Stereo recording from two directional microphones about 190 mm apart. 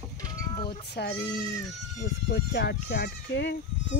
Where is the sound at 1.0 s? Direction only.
60° left (ahead or behind).